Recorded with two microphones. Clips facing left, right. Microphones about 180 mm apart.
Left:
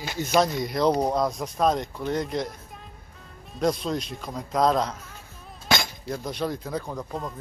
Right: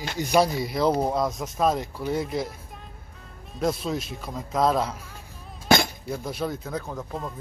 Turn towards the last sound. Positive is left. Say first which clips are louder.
# left 1 dB
turn(degrees=0)  # may be behind; listen again after turning